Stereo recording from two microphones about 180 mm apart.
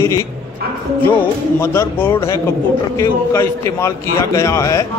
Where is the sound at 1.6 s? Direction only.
15° left (ahead or behind).